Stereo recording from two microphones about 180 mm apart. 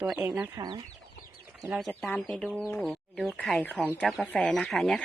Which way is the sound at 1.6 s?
5° right (ahead or behind).